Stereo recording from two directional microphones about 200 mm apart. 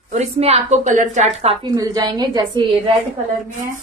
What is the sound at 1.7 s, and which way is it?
A woman's voice, 20° right (ahead or behind).